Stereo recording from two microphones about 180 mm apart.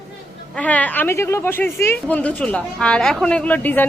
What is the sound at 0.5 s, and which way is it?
A woman's voice, 10° left (ahead or behind).